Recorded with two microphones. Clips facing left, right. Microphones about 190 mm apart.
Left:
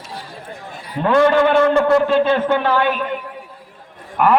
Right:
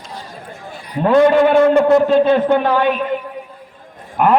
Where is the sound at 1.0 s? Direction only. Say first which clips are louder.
Right 3 dB; 15° right (ahead or behind).